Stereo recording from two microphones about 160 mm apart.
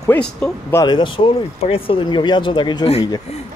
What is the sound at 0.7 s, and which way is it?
Speech, 25° left (ahead or behind).